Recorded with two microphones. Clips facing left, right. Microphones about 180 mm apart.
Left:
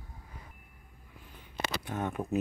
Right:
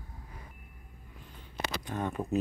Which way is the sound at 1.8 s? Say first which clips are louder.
Right 2 dB; 5° left (ahead or behind).